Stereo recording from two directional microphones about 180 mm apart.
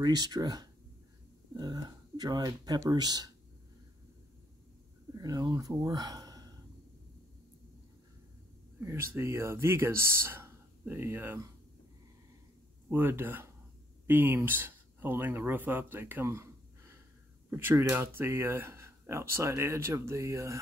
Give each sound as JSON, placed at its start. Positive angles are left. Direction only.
{"t": 0.0, "sound": "speech", "side_deg": -25}
{"t": 5.1, "sound": "speech", "side_deg": -20}
{"t": 8.7, "sound": "speech", "side_deg": -15}
{"t": 12.9, "sound": "speech", "side_deg": -10}